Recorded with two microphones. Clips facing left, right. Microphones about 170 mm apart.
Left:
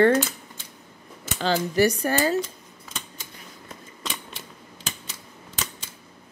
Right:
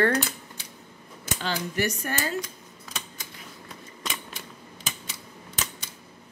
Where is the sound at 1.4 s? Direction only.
35° left (ahead or behind).